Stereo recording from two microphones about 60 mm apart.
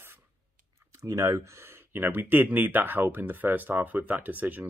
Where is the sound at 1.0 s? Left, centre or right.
Right.